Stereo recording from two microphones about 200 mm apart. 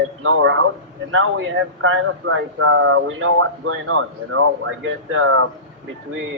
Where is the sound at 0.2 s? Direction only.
90° right.